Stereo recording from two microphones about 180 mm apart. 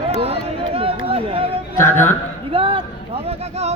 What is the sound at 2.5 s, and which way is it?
Speech, 30° right (ahead or behind).